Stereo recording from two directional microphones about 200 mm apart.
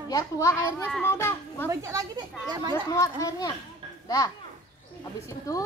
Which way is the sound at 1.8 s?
15° right (ahead or behind).